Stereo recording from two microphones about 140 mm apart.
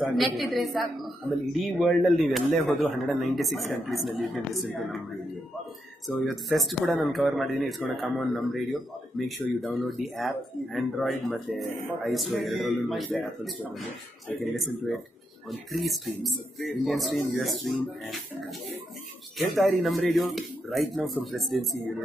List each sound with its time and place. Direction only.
0.0 s a woman's voice: centre (ahead or behind)
6.2 s a woman's voice: centre (ahead or behind)
14.4 s a woman's voice: centre (ahead or behind)
19.6 s a woman's voice: centre (ahead or behind)